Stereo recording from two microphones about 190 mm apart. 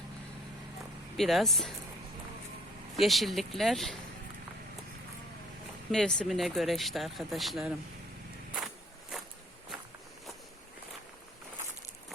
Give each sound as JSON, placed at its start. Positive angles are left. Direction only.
{"t": 1.1, "sound": "speech", "side_deg": 0}
{"t": 2.9, "sound": "speech", "side_deg": 0}
{"t": 5.9, "sound": "speech", "side_deg": 5}
{"t": 8.5, "sound": "a sound", "side_deg": 0}